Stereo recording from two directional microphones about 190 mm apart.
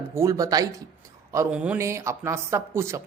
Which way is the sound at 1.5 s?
5° right (ahead or behind).